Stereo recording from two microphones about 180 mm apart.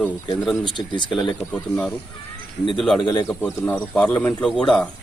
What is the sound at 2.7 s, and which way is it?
Speech, centre (ahead or behind).